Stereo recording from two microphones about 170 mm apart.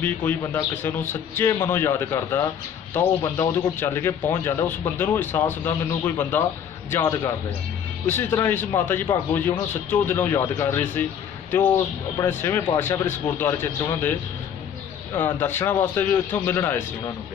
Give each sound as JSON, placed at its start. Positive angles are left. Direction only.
{"t": 0.0, "sound": "speech", "side_deg": 10}
{"t": 15.1, "sound": "speech", "side_deg": 15}